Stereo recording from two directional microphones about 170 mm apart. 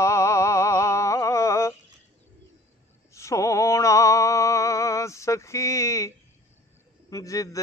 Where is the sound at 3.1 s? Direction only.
15° left (ahead or behind).